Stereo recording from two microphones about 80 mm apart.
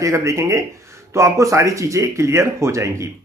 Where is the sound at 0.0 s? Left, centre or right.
Right.